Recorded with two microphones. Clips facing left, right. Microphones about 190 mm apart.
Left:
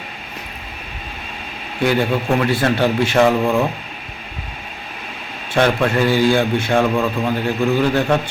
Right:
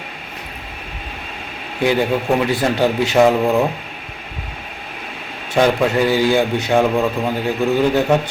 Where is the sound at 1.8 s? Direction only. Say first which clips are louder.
Right 1 dB; 15° right (ahead or behind).